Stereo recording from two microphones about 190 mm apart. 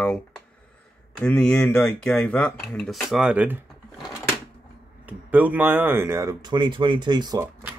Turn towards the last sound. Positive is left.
turn(degrees=-20)  # may be behind; listen again after turning